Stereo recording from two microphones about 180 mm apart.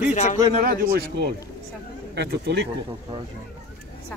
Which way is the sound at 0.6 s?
55° right (ahead or behind).